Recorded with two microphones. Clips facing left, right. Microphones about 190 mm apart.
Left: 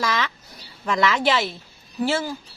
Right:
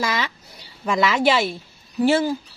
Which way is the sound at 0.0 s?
10° right (ahead or behind).